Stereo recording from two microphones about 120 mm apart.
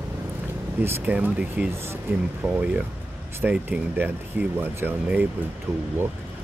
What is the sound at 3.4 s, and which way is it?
Speech, 10° right (ahead or behind).